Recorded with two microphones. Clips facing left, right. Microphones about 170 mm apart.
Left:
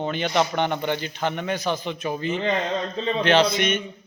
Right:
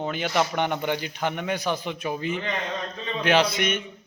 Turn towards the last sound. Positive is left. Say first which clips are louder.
# left 2 dB
turn(degrees=-10)  # may be behind; listen again after turning